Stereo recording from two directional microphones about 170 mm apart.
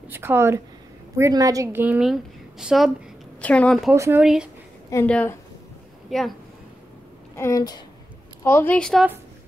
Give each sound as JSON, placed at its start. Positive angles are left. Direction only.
{"t": 0.1, "sound": "a woman's voice", "side_deg": -15}
{"t": 3.9, "sound": "a woman's voice", "side_deg": -15}
{"t": 4.2, "sound": "a woman's voice", "side_deg": -5}
{"t": 5.0, "sound": "a woman's voice", "side_deg": 5}
{"t": 7.3, "sound": "a woman's voice", "side_deg": 20}